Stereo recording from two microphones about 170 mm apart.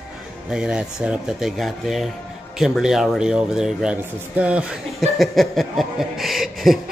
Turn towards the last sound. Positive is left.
turn(degrees=0)  # may be behind; listen again after turning